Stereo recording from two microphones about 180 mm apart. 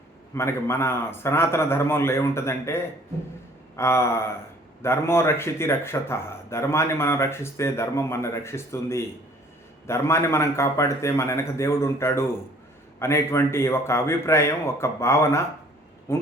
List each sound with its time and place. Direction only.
0.3 s a man's voice: 15° left (ahead or behind)